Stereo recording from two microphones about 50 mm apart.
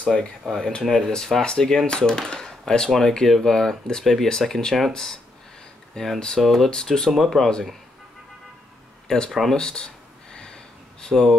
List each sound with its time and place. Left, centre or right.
0.0 s speech: centre
0.5 s speech: centre
6.4 s speech: centre
7.1 s speech: centre
9.0 s speech: centre
9.3 s speech: centre
9.6 s speech: centre
10.3 s sniff: centre